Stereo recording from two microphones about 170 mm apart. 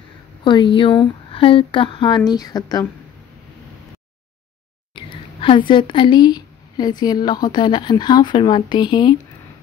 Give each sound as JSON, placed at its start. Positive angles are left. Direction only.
{"t": 0.4, "sound": "a woman's voice", "side_deg": 25}
{"t": 4.9, "sound": "speech", "side_deg": 30}